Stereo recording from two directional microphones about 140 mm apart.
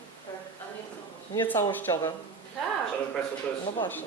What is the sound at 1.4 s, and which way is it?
Speech, 15° left (ahead or behind).